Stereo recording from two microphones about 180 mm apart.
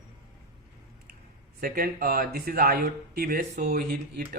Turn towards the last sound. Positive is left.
turn(degrees=-60)  # may be behind; listen again after turning